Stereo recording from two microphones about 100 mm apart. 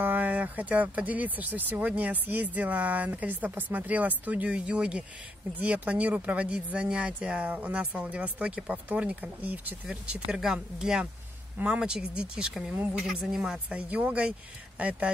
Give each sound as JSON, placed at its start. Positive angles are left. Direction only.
{"t": 0.0, "sound": "speech", "side_deg": -15}